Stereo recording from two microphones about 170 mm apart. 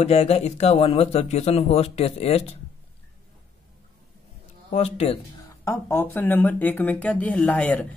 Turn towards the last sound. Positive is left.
turn(degrees=10)  # may be behind; listen again after turning